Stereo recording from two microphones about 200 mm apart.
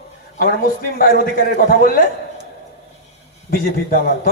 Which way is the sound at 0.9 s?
45° left (ahead or behind).